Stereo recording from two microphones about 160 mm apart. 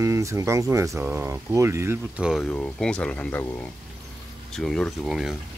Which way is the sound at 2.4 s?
5° left (ahead or behind).